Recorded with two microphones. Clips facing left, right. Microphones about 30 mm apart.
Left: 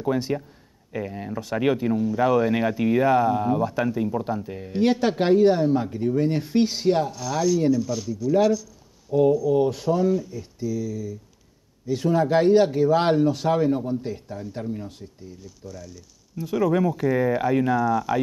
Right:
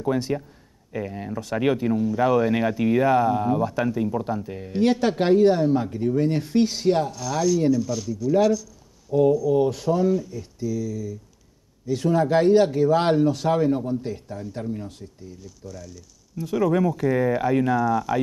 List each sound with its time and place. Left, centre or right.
0.0 s speech: centre